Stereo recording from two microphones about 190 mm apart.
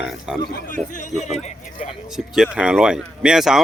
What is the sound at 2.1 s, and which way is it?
Speech, 5° right (ahead or behind).